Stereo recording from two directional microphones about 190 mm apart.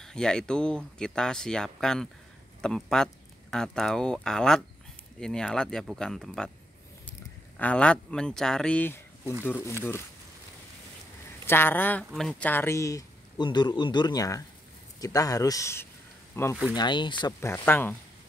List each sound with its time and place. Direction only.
0.0 s speech: 5° left (ahead or behind)
11.4 s speech: 10° left (ahead or behind)
16.7 s speech: 25° left (ahead or behind)